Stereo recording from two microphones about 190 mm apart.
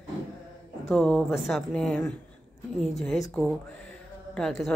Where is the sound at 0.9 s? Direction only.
Centre (ahead or behind).